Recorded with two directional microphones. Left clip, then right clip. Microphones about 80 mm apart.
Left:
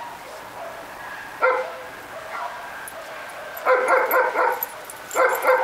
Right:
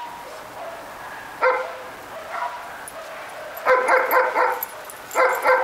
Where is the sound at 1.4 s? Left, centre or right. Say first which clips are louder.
Even; right.